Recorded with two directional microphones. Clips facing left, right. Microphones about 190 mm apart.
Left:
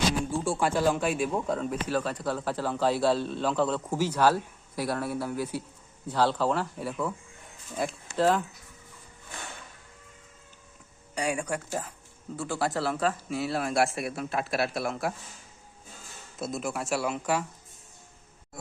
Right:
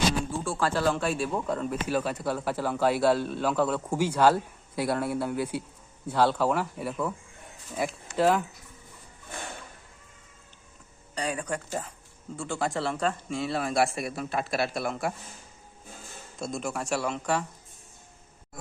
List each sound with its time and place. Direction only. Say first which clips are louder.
0.5 s speech: even; 15° left (ahead or behind)
1.3 s speech: even; 5° left (ahead or behind)
1.9 s a man's voice: right 2 dB; 10° right (ahead or behind)
6.1 s a man's voice: right 1 dB; 10° right (ahead or behind)
11.1 s speech: left 1 dB; 10° left (ahead or behind)
16.4 s speech: even; 5° left (ahead or behind)